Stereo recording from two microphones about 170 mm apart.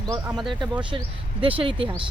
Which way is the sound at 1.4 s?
30° right (ahead or behind).